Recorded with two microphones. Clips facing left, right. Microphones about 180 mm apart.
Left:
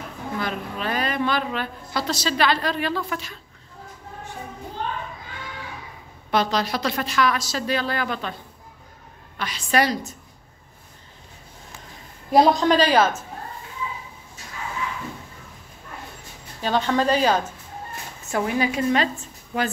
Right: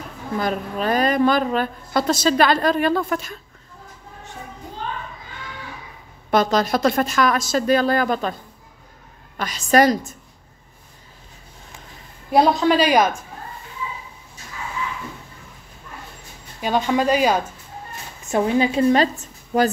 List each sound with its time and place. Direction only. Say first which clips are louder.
0.4 s a woman's voice: right 6 dB; 40° right (ahead or behind)
6.3 s a woman's voice: right 4 dB; 45° right (ahead or behind)
9.4 s a woman's voice: right 6 dB; 45° right (ahead or behind)
12.3 s a woman's voice: right 1 dB; centre (ahead or behind)
16.6 s a woman's voice: right 2 dB; 10° right (ahead or behind)
18.3 s a woman's voice: right 5 dB; 25° right (ahead or behind)
19.5 s speech: right 7 dB; 45° right (ahead or behind)